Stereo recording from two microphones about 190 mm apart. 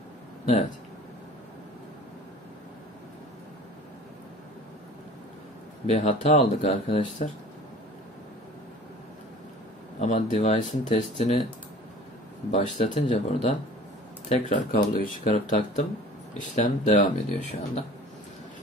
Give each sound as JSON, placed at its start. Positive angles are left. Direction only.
{"t": 5.9, "sound": "speech", "side_deg": 40}
{"t": 9.9, "sound": "speech", "side_deg": 40}
{"t": 12.4, "sound": "speech", "side_deg": 30}